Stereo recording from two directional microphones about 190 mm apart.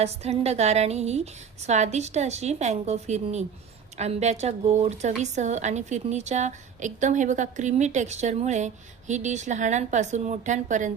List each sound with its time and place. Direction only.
0.0 s a woman's voice: 35° right (ahead or behind)